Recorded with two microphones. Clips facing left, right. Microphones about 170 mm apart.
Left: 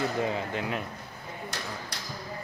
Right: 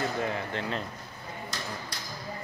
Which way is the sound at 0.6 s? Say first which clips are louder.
Left 1 dB; 10° left (ahead or behind).